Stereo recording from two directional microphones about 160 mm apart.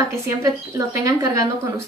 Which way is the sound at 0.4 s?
20° right (ahead or behind).